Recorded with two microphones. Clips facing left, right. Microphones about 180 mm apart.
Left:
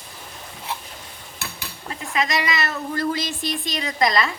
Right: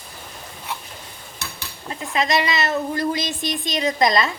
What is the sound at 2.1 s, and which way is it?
A woman's voice, 25° right (ahead or behind).